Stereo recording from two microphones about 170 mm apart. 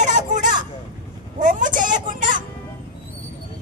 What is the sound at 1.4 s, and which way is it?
Music, 50° right (ahead or behind).